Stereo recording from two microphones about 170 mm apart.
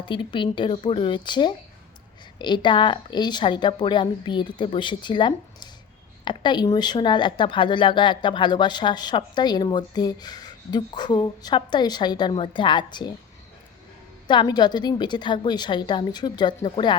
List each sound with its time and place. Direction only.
0.0 s speech: 30° left (ahead or behind)
14.3 s speech: 25° left (ahead or behind)